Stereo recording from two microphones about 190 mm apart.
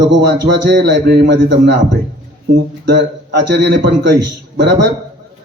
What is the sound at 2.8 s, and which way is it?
A man's voice, 60° right (ahead or behind).